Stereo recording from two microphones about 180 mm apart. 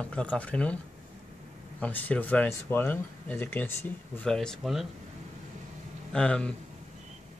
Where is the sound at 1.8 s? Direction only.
10° left (ahead or behind).